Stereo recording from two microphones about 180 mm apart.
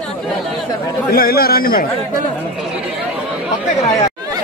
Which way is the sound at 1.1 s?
55° left (ahead or behind).